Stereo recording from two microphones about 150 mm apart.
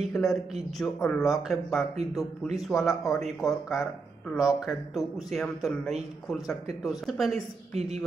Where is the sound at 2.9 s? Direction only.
20° left (ahead or behind).